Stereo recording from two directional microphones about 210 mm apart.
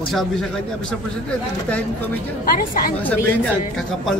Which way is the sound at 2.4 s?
45° left (ahead or behind).